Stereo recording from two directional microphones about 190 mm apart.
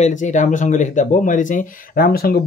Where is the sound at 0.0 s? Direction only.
40° left (ahead or behind).